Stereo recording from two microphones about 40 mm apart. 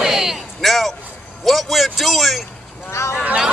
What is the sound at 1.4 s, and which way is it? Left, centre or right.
A man's voice, centre.